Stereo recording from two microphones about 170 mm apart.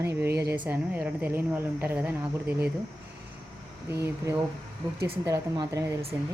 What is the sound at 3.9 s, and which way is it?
A woman's voice, 15° right (ahead or behind).